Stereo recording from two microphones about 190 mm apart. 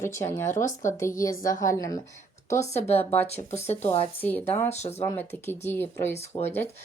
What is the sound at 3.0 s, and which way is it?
Speech, 10° left (ahead or behind).